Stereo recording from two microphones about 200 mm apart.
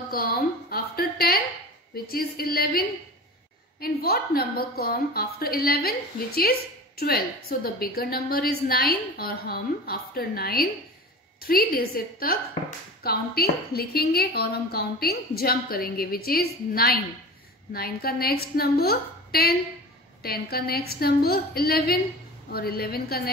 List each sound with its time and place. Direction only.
0.1 s a sound: 50° left (ahead or behind)
2.0 s a woman's voice: 50° left (ahead or behind)
3.8 s a woman's voice: 50° left (ahead or behind)